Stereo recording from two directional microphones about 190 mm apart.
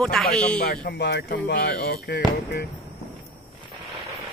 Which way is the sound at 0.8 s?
65° left (ahead or behind).